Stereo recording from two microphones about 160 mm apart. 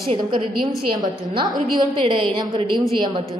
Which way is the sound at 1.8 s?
30° right (ahead or behind).